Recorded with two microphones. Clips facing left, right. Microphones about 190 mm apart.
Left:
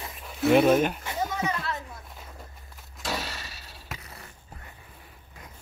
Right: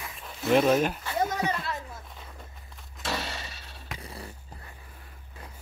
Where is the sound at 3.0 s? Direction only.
Centre (ahead or behind).